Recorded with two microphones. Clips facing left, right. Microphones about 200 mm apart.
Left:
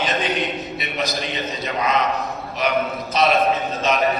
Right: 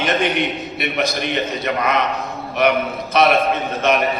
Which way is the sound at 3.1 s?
60° right (ahead or behind).